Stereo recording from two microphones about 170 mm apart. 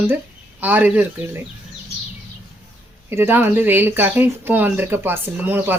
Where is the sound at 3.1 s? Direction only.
15° right (ahead or behind).